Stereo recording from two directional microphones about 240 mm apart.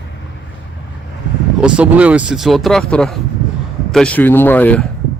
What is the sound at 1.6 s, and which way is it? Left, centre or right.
Speech, centre.